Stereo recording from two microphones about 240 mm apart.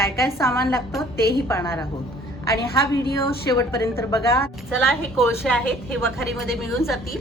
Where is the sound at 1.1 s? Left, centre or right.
Left.